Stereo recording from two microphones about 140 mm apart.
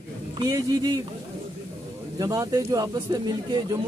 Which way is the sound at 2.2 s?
25° right (ahead or behind).